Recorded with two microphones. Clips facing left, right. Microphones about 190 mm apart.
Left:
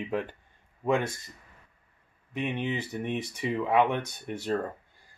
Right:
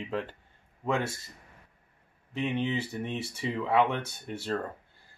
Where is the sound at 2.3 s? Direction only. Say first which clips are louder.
Right 1 dB; 15° left (ahead or behind).